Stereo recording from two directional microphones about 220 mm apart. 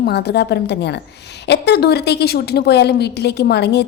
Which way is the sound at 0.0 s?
45° left (ahead or behind).